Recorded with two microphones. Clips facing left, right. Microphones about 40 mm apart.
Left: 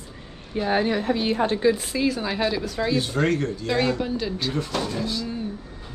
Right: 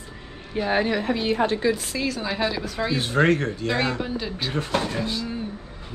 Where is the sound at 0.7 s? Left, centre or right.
Right.